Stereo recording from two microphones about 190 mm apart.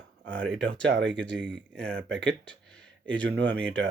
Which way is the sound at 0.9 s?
70° right (ahead or behind).